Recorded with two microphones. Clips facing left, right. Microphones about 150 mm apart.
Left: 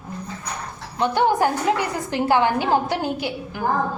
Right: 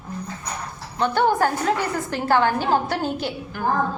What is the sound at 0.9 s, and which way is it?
A woman's voice, 15° left (ahead or behind).